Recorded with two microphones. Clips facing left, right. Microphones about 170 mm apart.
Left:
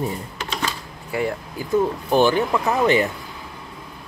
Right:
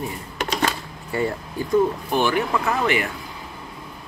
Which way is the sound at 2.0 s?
35° left (ahead or behind).